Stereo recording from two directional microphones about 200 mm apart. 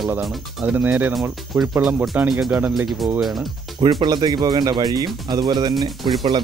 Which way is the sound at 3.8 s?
25° right (ahead or behind).